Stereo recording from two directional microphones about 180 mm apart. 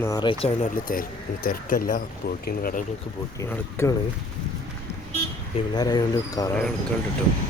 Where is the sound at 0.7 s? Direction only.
50° left (ahead or behind).